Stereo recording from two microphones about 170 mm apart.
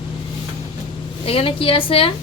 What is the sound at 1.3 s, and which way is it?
Speech, 35° left (ahead or behind).